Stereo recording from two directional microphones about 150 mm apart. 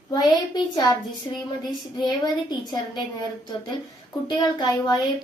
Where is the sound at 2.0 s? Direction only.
30° left (ahead or behind).